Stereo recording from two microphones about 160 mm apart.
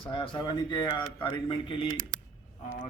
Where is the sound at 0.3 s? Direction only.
25° left (ahead or behind).